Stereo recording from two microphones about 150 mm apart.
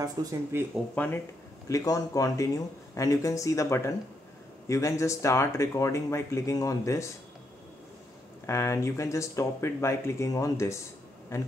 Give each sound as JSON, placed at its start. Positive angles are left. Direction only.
{"t": 0.0, "sound": "speech", "side_deg": -25}
{"t": 0.9, "sound": "speech", "side_deg": 15}
{"t": 8.5, "sound": "speech", "side_deg": 20}